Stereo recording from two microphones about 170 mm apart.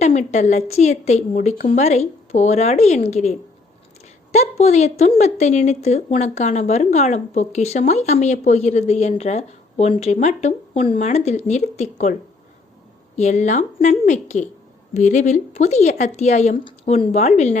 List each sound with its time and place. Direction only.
0.0 s speech: 40° left (ahead or behind)
13.1 s speech: 45° left (ahead or behind)